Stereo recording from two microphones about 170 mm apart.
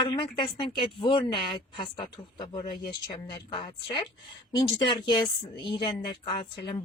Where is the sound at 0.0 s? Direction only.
25° left (ahead or behind).